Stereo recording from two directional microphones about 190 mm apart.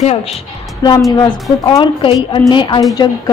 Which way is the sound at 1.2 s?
20° left (ahead or behind).